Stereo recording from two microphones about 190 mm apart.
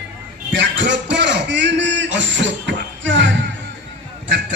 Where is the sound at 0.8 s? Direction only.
70° right (ahead or behind).